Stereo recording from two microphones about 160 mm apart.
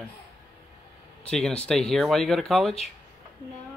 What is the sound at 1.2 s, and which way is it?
Speech, 5° left (ahead or behind).